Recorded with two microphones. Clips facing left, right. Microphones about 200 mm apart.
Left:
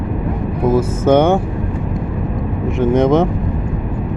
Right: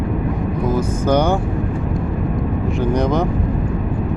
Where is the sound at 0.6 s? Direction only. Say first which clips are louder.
Left 6 dB; 25° left (ahead or behind).